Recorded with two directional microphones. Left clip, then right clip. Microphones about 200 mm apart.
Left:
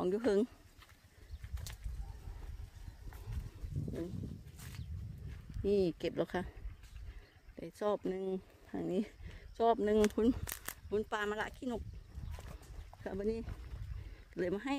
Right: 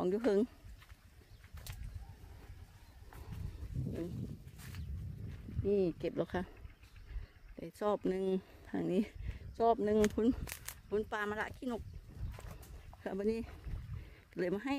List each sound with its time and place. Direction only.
0.0 s speech: 5° right (ahead or behind)
5.7 s speech: 15° left (ahead or behind); by 6.5 s centre (ahead or behind)
7.5 s speech: 5° right (ahead or behind)
8.0 s speech: 20° right (ahead or behind); by 11.8 s centre (ahead or behind)
13.0 s speech: 10° right (ahead or behind)